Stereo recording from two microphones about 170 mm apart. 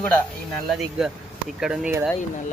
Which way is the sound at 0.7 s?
Centre (ahead or behind).